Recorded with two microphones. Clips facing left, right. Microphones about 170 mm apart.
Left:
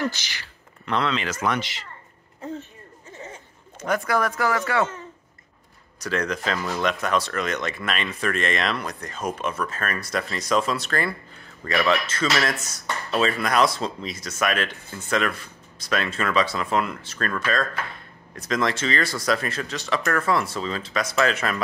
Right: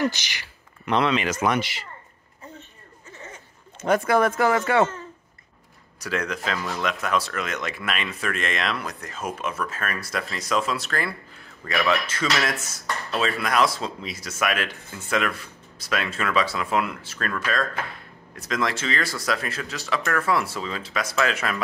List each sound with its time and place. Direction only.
0.0 s speech: 15° right (ahead or behind)
3.8 s speech: 25° right (ahead or behind)
5.9 s speech: 5° right (ahead or behind)